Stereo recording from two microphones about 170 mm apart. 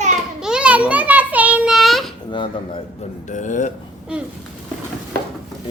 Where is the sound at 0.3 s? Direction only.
5° right (ahead or behind).